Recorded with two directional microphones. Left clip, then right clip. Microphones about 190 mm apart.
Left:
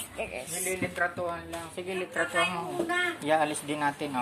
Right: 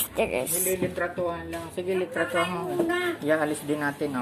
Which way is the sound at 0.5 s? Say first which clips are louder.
Right 5 dB; 20° right (ahead or behind).